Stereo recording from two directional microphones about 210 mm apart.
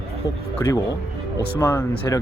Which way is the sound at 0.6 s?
15° left (ahead or behind).